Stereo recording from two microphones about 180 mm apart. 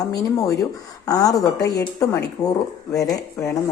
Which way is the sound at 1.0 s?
20° left (ahead or behind).